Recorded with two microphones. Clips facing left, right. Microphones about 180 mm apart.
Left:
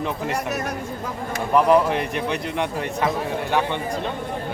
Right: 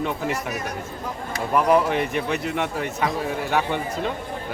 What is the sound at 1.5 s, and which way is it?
A man's voice, centre (ahead or behind).